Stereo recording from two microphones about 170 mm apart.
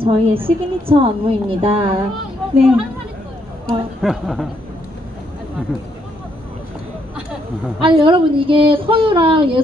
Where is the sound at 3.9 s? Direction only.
Centre (ahead or behind).